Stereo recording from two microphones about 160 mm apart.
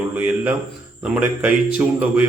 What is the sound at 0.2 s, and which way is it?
Speech, 10° right (ahead or behind).